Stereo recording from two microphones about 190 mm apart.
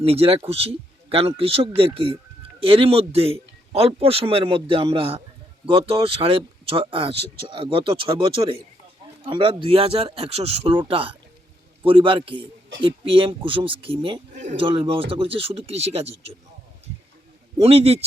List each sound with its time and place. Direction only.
0.0 s speech: 30° right (ahead or behind)
17.6 s speech: 30° right (ahead or behind)